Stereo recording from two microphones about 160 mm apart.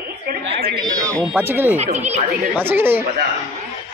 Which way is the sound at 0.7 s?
25° right (ahead or behind).